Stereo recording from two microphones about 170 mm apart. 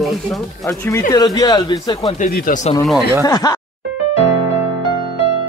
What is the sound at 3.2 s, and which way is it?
Speech, 20° left (ahead or behind).